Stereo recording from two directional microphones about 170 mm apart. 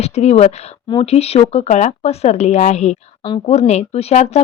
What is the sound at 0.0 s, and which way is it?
Speech, 40° left (ahead or behind).